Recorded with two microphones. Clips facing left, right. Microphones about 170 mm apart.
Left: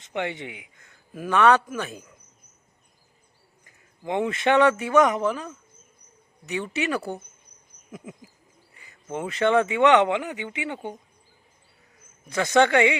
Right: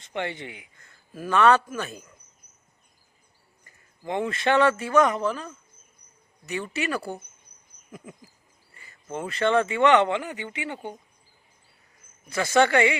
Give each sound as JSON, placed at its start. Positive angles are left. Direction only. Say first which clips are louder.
{"t": 0.1, "sound": "speech", "louder": "left 2 dB", "side_deg": 15}
{"t": 4.0, "sound": "speech", "louder": "left 2 dB", "side_deg": 15}
{"t": 6.7, "sound": "speech", "louder": "left 2 dB", "side_deg": 20}
{"t": 8.8, "sound": "a sound", "louder": "left 2 dB", "side_deg": 5}
{"t": 9.3, "sound": "speech", "louder": "left 2 dB", "side_deg": 10}
{"t": 12.3, "sound": "speech", "louder": "left 1 dB", "side_deg": 15}